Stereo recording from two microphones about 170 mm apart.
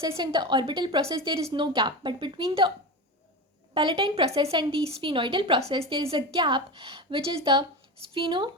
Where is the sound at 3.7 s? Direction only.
30° right (ahead or behind).